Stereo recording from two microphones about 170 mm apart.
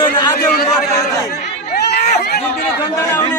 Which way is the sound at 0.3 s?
65° left (ahead or behind).